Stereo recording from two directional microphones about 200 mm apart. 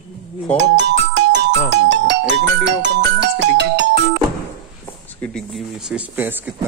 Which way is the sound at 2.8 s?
60° right (ahead or behind).